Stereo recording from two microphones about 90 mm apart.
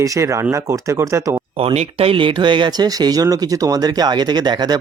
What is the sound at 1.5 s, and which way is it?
Speech, 90° right.